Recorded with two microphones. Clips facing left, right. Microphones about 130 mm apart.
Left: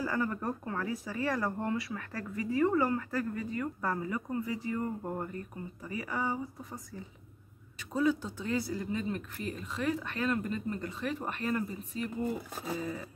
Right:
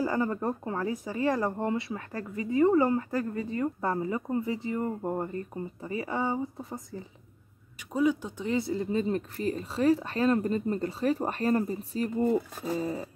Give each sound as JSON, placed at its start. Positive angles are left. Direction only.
{"t": 0.0, "sound": "speech", "side_deg": -25}
{"t": 7.9, "sound": "speech", "side_deg": -15}